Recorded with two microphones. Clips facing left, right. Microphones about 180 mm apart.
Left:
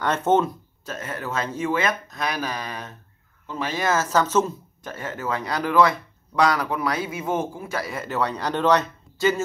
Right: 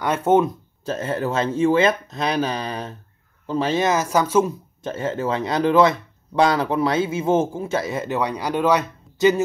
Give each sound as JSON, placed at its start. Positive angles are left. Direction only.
{"t": 0.0, "sound": "speech", "side_deg": -10}
{"t": 0.8, "sound": "speech", "side_deg": -30}
{"t": 4.8, "sound": "speech", "side_deg": -25}